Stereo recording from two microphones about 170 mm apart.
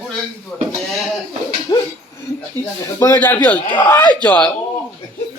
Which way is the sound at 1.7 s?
20° left (ahead or behind).